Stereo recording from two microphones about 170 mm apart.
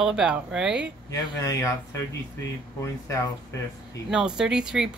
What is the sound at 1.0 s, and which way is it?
Speech, 20° left (ahead or behind).